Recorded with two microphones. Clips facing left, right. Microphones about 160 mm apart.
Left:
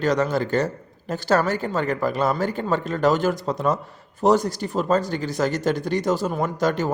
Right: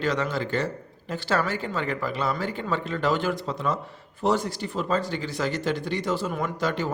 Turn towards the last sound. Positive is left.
turn(degrees=45)  # may be behind; listen again after turning